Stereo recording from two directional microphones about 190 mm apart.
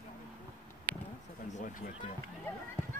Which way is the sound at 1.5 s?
40° left (ahead or behind).